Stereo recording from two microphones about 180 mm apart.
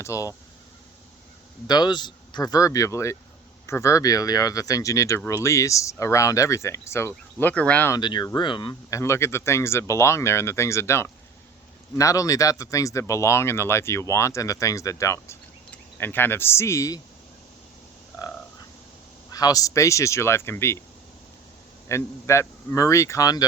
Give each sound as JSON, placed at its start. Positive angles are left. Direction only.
{"t": 0.0, "sound": "speech", "side_deg": 15}
{"t": 1.6, "sound": "speech", "side_deg": 25}
{"t": 7.9, "sound": "speech", "side_deg": 25}
{"t": 9.0, "sound": "speech", "side_deg": 15}
{"t": 19.3, "sound": "speech", "side_deg": 20}
{"t": 21.8, "sound": "speech", "side_deg": 15}